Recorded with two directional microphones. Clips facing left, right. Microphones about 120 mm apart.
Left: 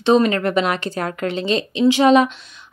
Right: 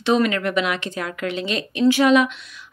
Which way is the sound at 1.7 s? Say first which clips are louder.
Even; 20° left (ahead or behind).